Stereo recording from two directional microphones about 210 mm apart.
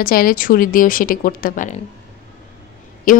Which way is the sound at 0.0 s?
45° left (ahead or behind).